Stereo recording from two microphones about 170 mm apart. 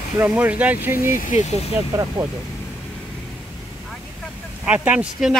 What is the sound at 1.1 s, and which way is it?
Speech, 45° left (ahead or behind).